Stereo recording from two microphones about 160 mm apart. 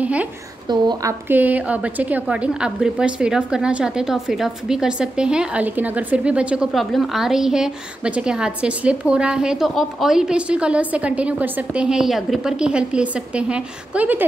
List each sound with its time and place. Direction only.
0.0 s a woman's voice: 10° right (ahead or behind)
0.7 s a woman's voice: 25° right (ahead or behind)
1.3 s a woman's voice: 10° right (ahead or behind)